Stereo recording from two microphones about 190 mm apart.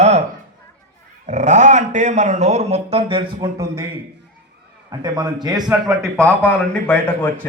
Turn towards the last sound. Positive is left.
turn(degrees=10)  # may be behind; listen again after turning